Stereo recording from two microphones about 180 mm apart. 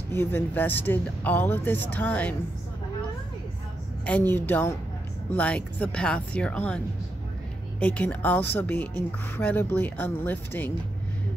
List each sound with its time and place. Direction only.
0.1 s speech: 10° left (ahead or behind)
4.0 s speech: 10° left (ahead or behind)
7.8 s speech: 10° left (ahead or behind)